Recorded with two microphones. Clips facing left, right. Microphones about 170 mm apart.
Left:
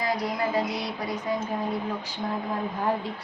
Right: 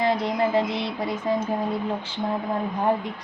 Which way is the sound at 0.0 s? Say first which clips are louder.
Right 5 dB; 25° right (ahead or behind).